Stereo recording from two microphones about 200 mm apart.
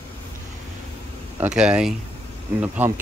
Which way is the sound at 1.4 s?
5° right (ahead or behind).